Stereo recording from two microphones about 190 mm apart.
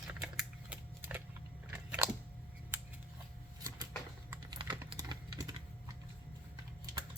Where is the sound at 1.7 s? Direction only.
5° right (ahead or behind).